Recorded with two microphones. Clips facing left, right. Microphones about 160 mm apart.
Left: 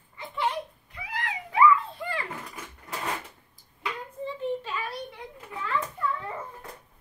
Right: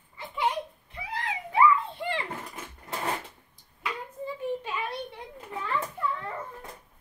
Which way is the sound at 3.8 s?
10° right (ahead or behind).